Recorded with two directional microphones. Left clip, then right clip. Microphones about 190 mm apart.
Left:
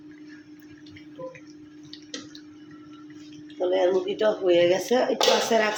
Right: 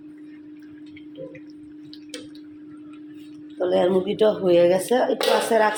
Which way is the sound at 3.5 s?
25° right (ahead or behind).